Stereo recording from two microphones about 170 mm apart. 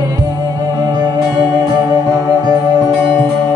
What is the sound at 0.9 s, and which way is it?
Music, 25° right (ahead or behind).